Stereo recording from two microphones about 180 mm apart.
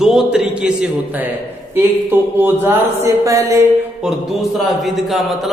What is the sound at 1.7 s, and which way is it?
Music, 10° right (ahead or behind).